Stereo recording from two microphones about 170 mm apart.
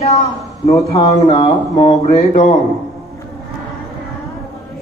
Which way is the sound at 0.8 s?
35° left (ahead or behind).